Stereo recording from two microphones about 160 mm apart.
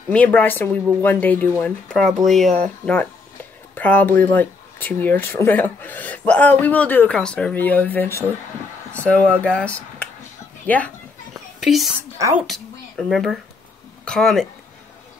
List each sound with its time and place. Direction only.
0.1 s speech: 10° left (ahead or behind)
11.6 s a woman's voice: centre (ahead or behind)
12.2 s a woman's voice: 15° right (ahead or behind)
12.4 s speech: centre (ahead or behind)